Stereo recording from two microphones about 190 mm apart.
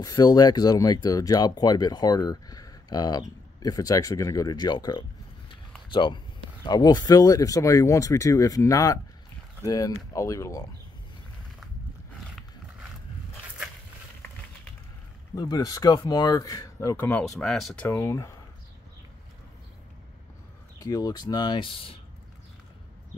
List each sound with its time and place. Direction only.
0.0 s speech: 20° left (ahead or behind)
15.3 s speech: 20° left (ahead or behind); by 17.8 s centre (ahead or behind)
17.8 s speech: 15° left (ahead or behind)
20.8 s speech: 20° left (ahead or behind)